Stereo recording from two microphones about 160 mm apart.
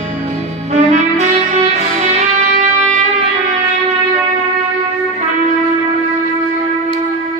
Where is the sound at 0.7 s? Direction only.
45° right (ahead or behind).